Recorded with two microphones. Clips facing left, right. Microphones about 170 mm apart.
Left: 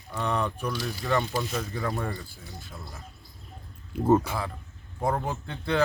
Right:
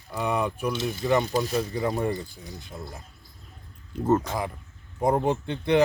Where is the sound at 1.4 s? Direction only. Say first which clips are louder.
Right 5 dB; 35° right (ahead or behind).